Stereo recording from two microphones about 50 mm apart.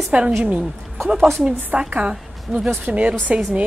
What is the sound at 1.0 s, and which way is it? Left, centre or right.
Speech, centre.